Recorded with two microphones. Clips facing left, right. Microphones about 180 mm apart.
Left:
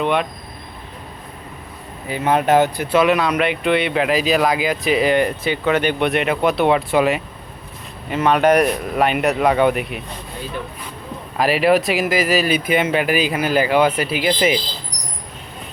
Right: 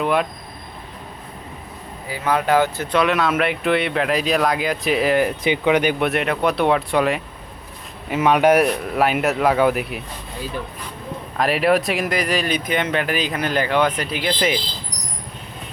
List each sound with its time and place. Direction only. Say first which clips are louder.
0.0 s speech: left 1 dB; centre (ahead or behind)
2.0 s speech: left 3 dB; 20° left (ahead or behind)
2.9 s speech: left 3 dB; centre (ahead or behind)
5.4 s speech: right 1 dB; 15° right (ahead or behind); by 7.2 s centre (ahead or behind)
8.1 s speech: even; 10° right (ahead or behind)
11.3 s speech: left 2 dB; centre (ahead or behind)